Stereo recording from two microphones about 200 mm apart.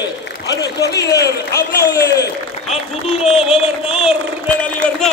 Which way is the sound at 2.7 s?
Centre (ahead or behind).